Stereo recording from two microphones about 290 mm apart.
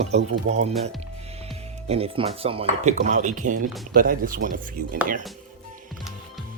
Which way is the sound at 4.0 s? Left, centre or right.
Right.